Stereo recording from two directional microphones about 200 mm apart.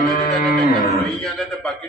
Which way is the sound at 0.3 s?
40° left (ahead or behind).